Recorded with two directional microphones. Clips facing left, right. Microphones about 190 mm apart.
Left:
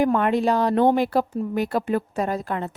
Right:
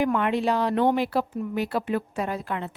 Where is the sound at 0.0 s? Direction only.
45° left (ahead or behind).